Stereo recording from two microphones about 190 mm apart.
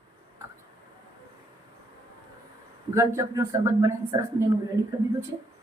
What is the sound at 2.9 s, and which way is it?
Speech, 15° right (ahead or behind).